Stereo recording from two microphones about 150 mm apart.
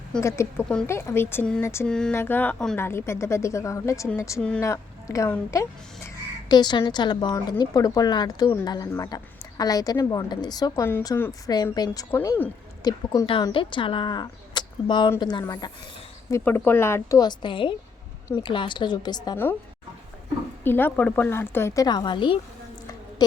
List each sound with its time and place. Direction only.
0.2 s a woman's voice: 20° left (ahead or behind)
1.9 s a woman's voice: 5° left (ahead or behind); by 4.1 s 20° left (ahead or behind)
4.4 s speech: 5° left (ahead or behind)
4.6 s a woman's voice: 20° left (ahead or behind)
13.2 s a woman's voice: 35° left (ahead or behind)
16.4 s a woman's voice: 10° left (ahead or behind); by 19.4 s 30° left (ahead or behind)
20.7 s speech: 15° left (ahead or behind)
21.8 s speech: 30° left (ahead or behind)